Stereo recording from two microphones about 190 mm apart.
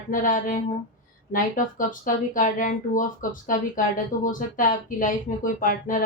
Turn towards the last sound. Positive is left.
turn(degrees=45)  # may be behind; listen again after turning